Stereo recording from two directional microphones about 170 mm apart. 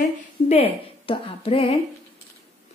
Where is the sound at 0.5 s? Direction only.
35° left (ahead or behind).